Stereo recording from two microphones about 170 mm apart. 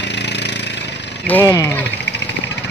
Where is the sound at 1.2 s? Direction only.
15° left (ahead or behind).